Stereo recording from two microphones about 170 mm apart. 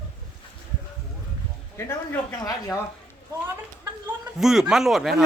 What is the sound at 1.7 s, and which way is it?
Speech, 15° left (ahead or behind).